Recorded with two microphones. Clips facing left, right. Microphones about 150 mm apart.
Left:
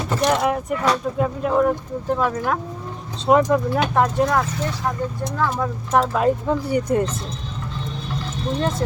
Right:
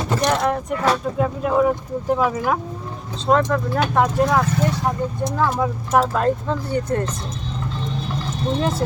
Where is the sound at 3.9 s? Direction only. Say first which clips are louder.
Right 2 dB; centre (ahead or behind).